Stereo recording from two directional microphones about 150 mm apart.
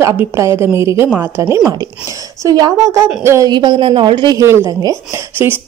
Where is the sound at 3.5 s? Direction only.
30° right (ahead or behind); by 5.6 s 15° right (ahead or behind).